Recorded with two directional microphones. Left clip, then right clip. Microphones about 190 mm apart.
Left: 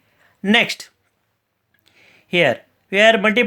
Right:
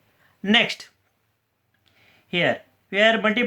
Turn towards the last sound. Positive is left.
turn(degrees=45)  # may be behind; listen again after turning